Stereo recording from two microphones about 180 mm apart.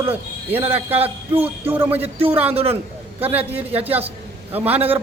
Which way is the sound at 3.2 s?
10° right (ahead or behind).